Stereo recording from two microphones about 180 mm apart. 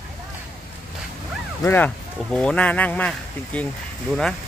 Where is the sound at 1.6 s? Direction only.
10° left (ahead or behind).